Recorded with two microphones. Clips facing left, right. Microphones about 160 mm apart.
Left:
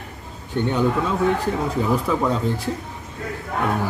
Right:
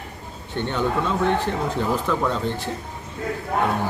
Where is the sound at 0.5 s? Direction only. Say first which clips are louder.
Left 3 dB; 10° left (ahead or behind).